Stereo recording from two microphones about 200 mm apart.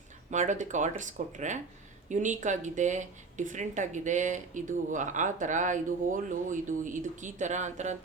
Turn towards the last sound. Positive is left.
turn(degrees=-35)  # may be behind; listen again after turning